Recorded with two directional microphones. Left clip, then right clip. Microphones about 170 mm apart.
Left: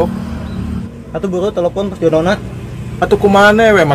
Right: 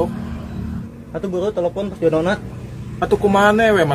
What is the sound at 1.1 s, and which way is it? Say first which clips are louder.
A man's voice: left 5 dB; 5° right (ahead or behind).